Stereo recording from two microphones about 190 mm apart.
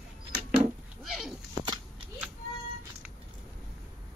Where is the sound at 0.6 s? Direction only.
Centre (ahead or behind).